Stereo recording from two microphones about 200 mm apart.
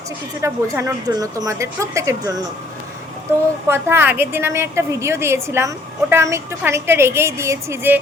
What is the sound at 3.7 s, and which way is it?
A woman's voice, 10° right (ahead or behind).